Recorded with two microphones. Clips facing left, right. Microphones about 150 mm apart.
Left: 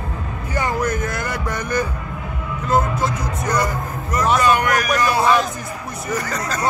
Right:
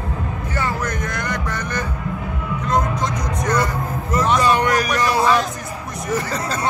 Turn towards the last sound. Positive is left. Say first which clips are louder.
# right 1 dB
turn(degrees=-30)  # may be behind; listen again after turning